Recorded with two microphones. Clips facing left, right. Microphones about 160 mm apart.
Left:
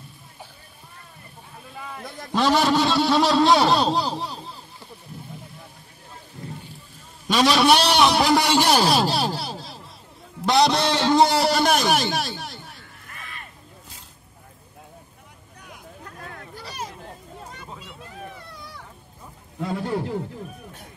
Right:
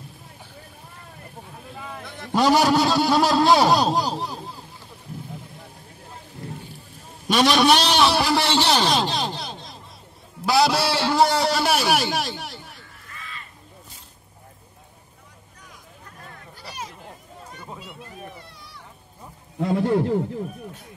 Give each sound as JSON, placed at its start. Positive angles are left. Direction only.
{"t": 2.3, "sound": "a man's voice", "side_deg": -10}
{"t": 4.0, "sound": "a sound", "side_deg": -10}
{"t": 7.2, "sound": "a sound", "side_deg": 0}
{"t": 11.3, "sound": "music", "side_deg": 0}
{"t": 13.2, "sound": "vehicle", "side_deg": 55}
{"t": 19.9, "sound": "speech", "side_deg": -40}